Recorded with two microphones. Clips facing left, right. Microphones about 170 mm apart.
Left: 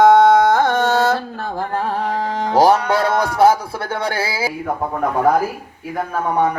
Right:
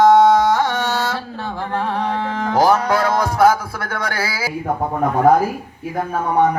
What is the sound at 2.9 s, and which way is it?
Speech, 30° left (ahead or behind).